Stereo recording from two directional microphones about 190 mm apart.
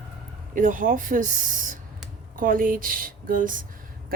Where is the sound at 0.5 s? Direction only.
45° right (ahead or behind).